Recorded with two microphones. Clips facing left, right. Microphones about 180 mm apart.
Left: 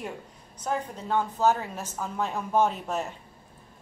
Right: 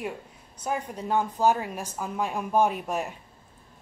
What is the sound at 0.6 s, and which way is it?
A woman's voice, 10° right (ahead or behind).